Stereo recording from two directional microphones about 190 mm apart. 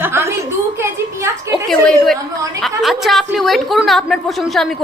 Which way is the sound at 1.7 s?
Centre (ahead or behind).